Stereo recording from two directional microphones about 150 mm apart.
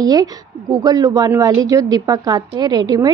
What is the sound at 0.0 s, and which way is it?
A woman's voice, 25° right (ahead or behind).